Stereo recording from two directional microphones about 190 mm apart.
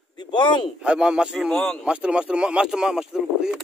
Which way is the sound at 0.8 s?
5° right (ahead or behind).